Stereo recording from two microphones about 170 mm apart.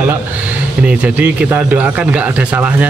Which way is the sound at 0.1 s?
10° right (ahead or behind).